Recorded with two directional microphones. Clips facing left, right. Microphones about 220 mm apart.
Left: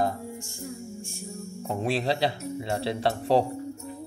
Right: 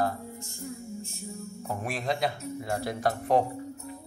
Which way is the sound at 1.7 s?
30° left (ahead or behind).